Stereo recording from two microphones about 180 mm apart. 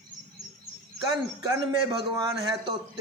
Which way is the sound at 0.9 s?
25° right (ahead or behind).